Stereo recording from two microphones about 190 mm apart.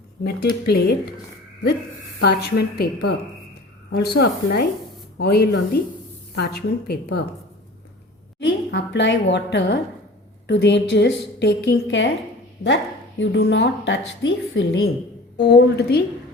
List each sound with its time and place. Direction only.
0.6 s a woman's voice: 55° left (ahead or behind)
2.1 s a woman's voice: 55° left (ahead or behind)
8.4 s a woman's voice: 70° left (ahead or behind)
15.4 s a woman's voice: 60° left (ahead or behind)